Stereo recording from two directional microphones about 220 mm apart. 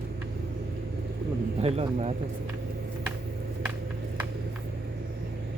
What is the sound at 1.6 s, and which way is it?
Speech, 30° right (ahead or behind).